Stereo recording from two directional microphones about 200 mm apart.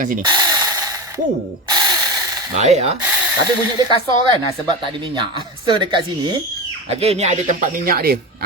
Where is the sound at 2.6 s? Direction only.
35° right (ahead or behind).